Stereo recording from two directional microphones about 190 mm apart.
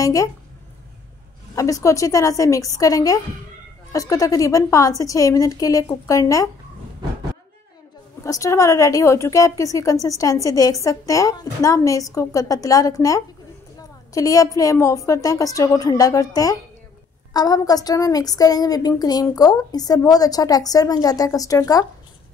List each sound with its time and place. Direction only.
0.0 s speech: 15° left (ahead or behind)
1.5 s a woman's voice: 15° left (ahead or behind)
8.2 s a woman's voice: 15° left (ahead or behind)